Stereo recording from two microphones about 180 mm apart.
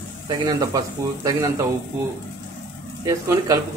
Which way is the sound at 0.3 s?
20° right (ahead or behind).